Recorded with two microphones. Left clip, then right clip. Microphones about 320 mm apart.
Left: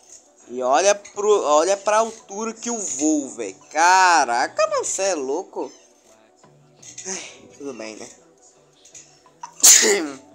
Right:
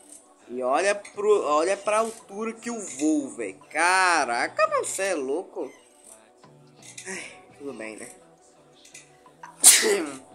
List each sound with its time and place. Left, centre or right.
0.6 s speech: centre
7.1 s speech: centre
9.4 s sneeze: left